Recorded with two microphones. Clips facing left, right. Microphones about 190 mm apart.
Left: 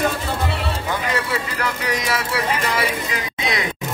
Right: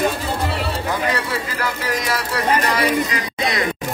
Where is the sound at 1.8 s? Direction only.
Centre (ahead or behind).